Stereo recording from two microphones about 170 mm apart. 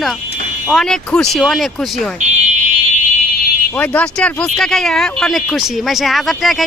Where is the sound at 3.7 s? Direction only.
10° left (ahead or behind).